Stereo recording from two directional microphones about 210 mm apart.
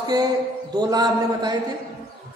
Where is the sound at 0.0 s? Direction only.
20° right (ahead or behind).